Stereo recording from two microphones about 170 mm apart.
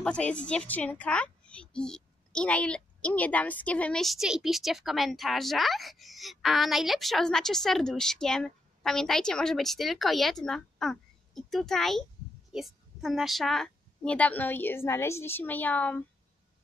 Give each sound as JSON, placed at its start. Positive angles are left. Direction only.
{"t": 0.0, "sound": "a woman's voice", "side_deg": 5}